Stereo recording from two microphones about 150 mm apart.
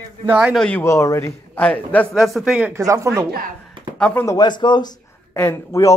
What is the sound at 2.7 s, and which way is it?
Speech, 20° right (ahead or behind).